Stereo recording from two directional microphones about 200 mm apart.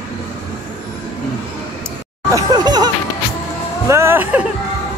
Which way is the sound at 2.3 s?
20° right (ahead or behind).